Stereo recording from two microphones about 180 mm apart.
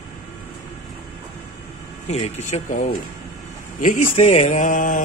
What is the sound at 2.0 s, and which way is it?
Speech, 35° left (ahead or behind).